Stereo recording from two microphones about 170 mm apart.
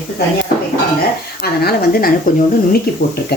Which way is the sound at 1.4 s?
65° left (ahead or behind).